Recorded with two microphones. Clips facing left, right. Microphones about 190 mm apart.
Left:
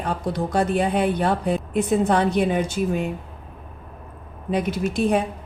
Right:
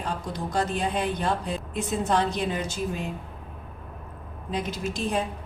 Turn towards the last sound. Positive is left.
turn(degrees=60)  # may be behind; listen again after turning